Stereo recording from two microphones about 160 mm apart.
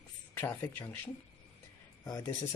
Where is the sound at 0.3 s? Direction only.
15° left (ahead or behind).